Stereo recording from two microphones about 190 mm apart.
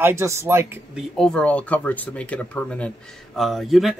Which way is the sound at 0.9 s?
5° left (ahead or behind).